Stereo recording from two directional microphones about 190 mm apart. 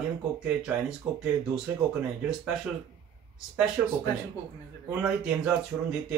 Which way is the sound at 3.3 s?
5° right (ahead or behind).